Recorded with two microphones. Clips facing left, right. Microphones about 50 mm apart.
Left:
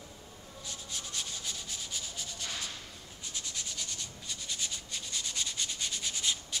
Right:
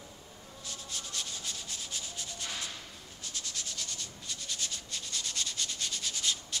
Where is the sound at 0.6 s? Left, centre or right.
Centre.